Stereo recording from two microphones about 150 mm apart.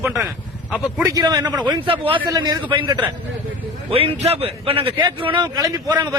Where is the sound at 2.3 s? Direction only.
25° right (ahead or behind).